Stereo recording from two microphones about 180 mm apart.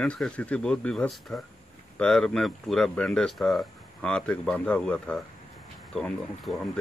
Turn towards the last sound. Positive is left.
turn(degrees=5)  # may be behind; listen again after turning